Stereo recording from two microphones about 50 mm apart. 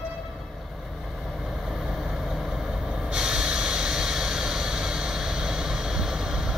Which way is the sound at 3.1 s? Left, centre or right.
Centre.